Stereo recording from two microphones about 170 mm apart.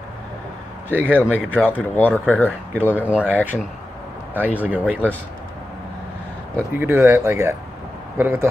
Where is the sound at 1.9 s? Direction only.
10° left (ahead or behind).